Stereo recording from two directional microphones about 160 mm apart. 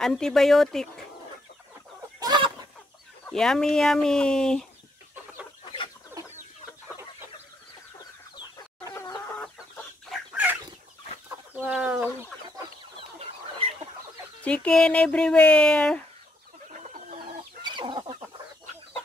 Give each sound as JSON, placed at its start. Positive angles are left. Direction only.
{"t": 0.0, "sound": "speech", "side_deg": 5}
{"t": 2.1, "sound": "fowl", "side_deg": -25}
{"t": 3.3, "sound": "speech", "side_deg": 5}
{"t": 8.8, "sound": "chicken", "side_deg": 25}
{"t": 10.1, "sound": "chicken", "side_deg": -10}
{"t": 14.4, "sound": "speech", "side_deg": 5}
{"t": 17.6, "sound": "chicken", "side_deg": -30}